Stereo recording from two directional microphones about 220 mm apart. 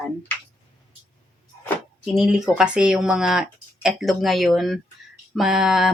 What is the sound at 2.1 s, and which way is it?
Speech, centre (ahead or behind).